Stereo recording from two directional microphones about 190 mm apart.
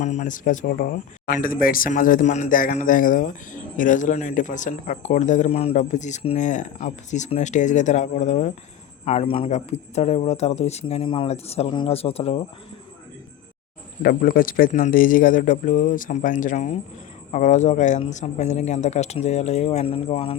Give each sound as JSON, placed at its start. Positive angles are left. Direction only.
{"t": 0.0, "sound": "speech", "side_deg": 40}
{"t": 14.0, "sound": "speech", "side_deg": 50}